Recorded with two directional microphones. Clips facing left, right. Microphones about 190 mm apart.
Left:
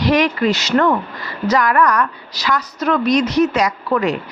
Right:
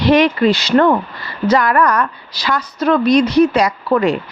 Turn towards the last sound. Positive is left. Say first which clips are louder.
# right 3 dB
turn(degrees=-30)  # may be behind; listen again after turning